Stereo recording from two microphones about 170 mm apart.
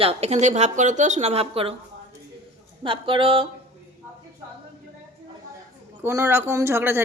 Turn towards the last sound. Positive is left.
turn(degrees=-15)  # may be behind; listen again after turning